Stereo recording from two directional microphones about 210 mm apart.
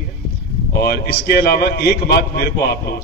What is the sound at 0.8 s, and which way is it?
A man's voice, 45° left (ahead or behind).